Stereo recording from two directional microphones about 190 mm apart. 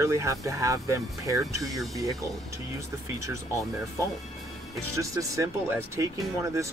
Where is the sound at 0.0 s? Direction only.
15° right (ahead or behind).